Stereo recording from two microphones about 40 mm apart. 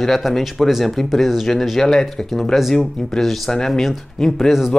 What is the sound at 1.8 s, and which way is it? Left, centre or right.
Speech, centre.